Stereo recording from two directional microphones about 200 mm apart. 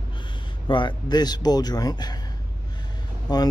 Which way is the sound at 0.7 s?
25° left (ahead or behind).